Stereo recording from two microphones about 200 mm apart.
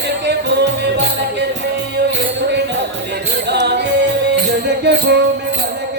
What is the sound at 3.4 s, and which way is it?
Music, 60° right (ahead or behind).